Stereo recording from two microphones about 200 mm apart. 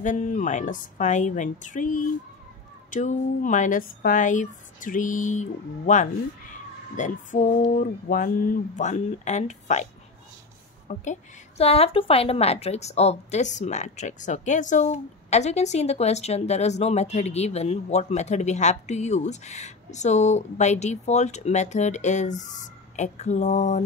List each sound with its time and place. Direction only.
0.0 s a woman's voice: 40° left (ahead or behind)
10.9 s a woman's voice: 35° left (ahead or behind)